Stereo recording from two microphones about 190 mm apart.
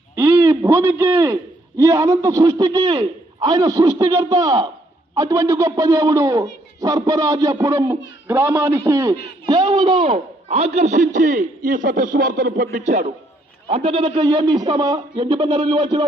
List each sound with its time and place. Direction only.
0.2 s a man's voice: 15° right (ahead or behind); by 13.1 s 40° right (ahead or behind)
13.7 s speech: 30° right (ahead or behind)